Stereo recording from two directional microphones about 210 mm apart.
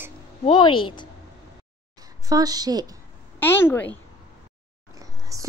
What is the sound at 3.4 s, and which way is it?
Speech, 10° left (ahead or behind).